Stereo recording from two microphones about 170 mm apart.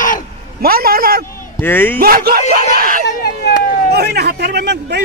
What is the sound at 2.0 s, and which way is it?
Speech, 60° right (ahead or behind).